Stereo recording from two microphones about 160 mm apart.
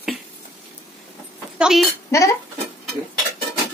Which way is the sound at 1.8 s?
15° left (ahead or behind).